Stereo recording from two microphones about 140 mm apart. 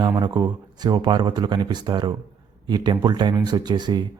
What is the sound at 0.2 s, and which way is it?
A man's voice, 30° right (ahead or behind).